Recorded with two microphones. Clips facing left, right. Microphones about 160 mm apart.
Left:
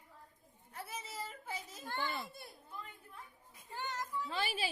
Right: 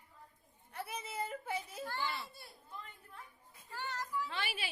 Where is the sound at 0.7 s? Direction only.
65° right (ahead or behind).